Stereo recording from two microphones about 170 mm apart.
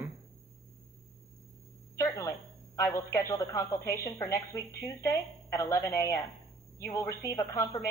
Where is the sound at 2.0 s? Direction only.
15° left (ahead or behind).